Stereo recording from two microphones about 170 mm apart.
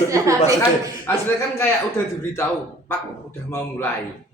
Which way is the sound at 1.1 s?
15° left (ahead or behind).